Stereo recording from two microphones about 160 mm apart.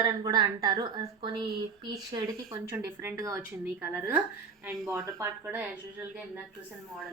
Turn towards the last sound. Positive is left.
turn(degrees=-10)  # may be behind; listen again after turning